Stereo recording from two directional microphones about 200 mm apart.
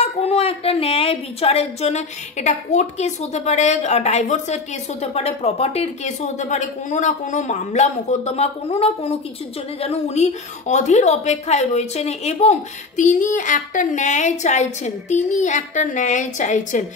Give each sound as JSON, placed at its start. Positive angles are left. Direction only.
{"t": 0.0, "sound": "a woman's voice", "side_deg": 30}